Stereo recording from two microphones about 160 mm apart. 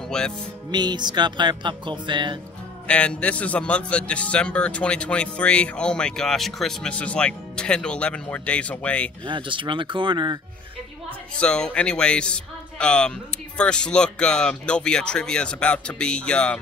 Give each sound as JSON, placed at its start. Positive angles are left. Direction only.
{"t": 0.1, "sound": "speech", "side_deg": 5}
{"t": 0.7, "sound": "speech", "side_deg": -25}
{"t": 2.9, "sound": "a man's voice", "side_deg": 5}
{"t": 9.2, "sound": "speech", "side_deg": -30}
{"t": 11.3, "sound": "a man's voice", "side_deg": 5}